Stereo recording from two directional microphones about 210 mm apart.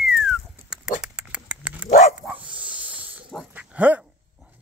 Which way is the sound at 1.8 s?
35° left (ahead or behind).